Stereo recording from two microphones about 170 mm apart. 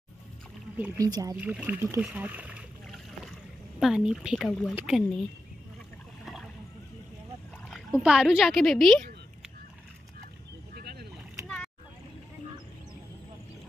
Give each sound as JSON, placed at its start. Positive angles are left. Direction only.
{"t": 0.9, "sound": "speech", "side_deg": -20}
{"t": 1.4, "sound": "speech", "side_deg": -5}
{"t": 2.0, "sound": "boat", "side_deg": -10}
{"t": 3.8, "sound": "speech", "side_deg": -5}
{"t": 6.2, "sound": "boat", "side_deg": 0}
{"t": 7.7, "sound": "speech", "side_deg": 0}
{"t": 10.7, "sound": "boat", "side_deg": -60}
{"t": 11.4, "sound": "boat", "side_deg": 5}